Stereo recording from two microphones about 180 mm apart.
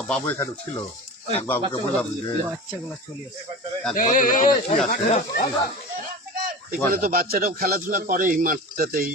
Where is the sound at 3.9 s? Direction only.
45° left (ahead or behind).